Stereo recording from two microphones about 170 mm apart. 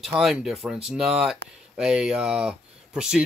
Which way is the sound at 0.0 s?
Centre (ahead or behind).